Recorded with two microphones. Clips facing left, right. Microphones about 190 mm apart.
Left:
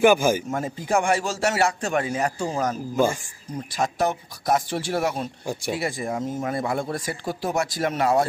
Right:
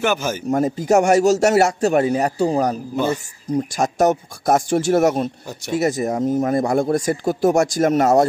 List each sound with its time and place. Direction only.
0.0 s speech: 10° left (ahead or behind)
0.5 s a man's voice: 40° right (ahead or behind)